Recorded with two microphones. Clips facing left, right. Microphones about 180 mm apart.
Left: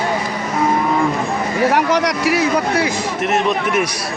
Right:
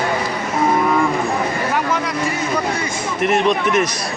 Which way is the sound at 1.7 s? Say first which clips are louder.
Left 4 dB; 80° left.